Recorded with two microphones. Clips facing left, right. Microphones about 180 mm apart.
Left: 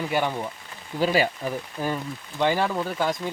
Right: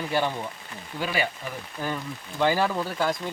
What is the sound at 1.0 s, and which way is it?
Speech, 35° left (ahead or behind).